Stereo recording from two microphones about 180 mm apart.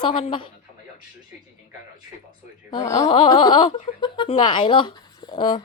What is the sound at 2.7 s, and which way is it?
A woman's voice, 20° left (ahead or behind).